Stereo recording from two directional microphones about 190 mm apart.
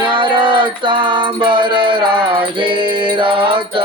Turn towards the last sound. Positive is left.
turn(degrees=-25)  # may be behind; listen again after turning